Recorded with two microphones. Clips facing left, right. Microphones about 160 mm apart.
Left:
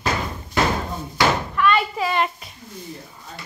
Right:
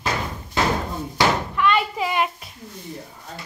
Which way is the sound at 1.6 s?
15° right (ahead or behind).